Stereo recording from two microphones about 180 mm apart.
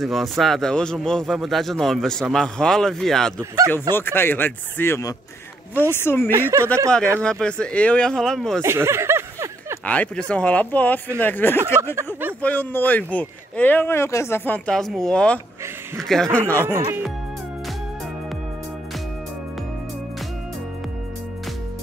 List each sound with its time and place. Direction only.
0.0 s speech: centre (ahead or behind)
3.3 s speech: 15° right (ahead or behind)
3.9 s speech: 10° left (ahead or behind)
6.3 s speech: 15° right (ahead or behind)
7.2 s speech: 5° left (ahead or behind)
8.6 s a sound: 15° right (ahead or behind)
9.8 s speech: 5° left (ahead or behind)